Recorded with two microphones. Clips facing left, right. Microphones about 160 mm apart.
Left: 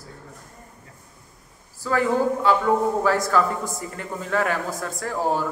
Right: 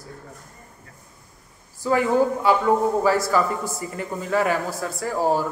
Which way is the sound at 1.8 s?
10° right (ahead or behind).